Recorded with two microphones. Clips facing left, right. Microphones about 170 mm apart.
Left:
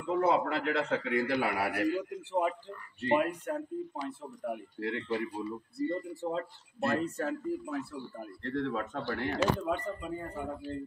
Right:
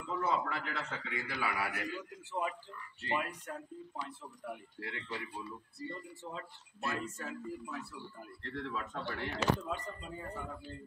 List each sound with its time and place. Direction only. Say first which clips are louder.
0.1 s a man's voice: left 7 dB; 60° left (ahead or behind)